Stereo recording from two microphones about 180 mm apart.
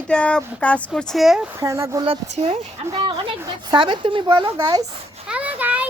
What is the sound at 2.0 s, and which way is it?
A woman's voice, 35° right (ahead or behind).